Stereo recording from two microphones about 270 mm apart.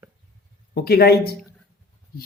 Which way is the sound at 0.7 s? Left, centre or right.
Left.